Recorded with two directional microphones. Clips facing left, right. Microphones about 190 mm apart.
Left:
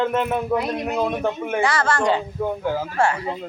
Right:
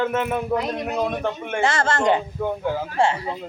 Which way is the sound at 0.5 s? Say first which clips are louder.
Left 2 dB; 10° left (ahead or behind).